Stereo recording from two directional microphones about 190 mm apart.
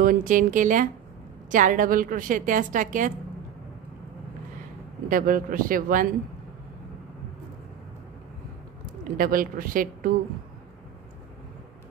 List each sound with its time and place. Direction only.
0.0 s a woman's voice: 45° right (ahead or behind)
5.1 s a woman's voice: 45° right (ahead or behind)
9.1 s a woman's voice: 50° right (ahead or behind)